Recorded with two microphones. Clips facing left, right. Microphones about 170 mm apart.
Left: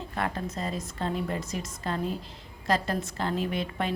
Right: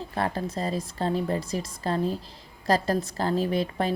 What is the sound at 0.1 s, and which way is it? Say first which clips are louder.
A woman's voice: right 3 dB; 35° right (ahead or behind).